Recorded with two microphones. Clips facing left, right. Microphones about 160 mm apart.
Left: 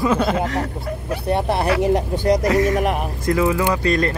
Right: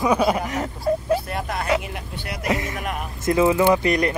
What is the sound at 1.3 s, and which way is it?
Speech, 30° left (ahead or behind).